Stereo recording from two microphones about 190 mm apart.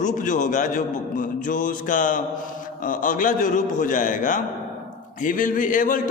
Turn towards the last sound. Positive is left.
turn(degrees=45)  # may be behind; listen again after turning